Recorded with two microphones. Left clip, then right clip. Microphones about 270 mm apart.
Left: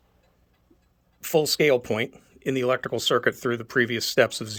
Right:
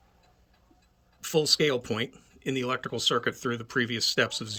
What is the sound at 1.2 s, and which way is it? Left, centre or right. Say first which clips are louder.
Speech: left 3 dB; centre.